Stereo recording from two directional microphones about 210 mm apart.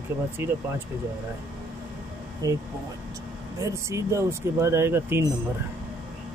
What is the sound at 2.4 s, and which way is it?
Speech, 15° right (ahead or behind).